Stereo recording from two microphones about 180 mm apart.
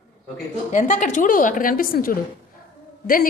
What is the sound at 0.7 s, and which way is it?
A woman's voice, 45° left (ahead or behind).